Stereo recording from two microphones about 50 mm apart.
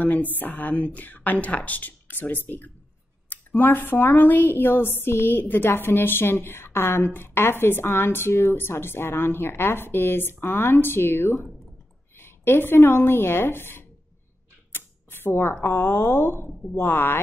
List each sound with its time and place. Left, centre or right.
0.0 s a woman's voice: left
14.7 s a sound: left
15.6 s speech: left